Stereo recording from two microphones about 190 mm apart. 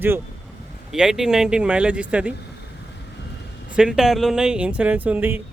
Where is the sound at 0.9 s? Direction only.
5° right (ahead or behind).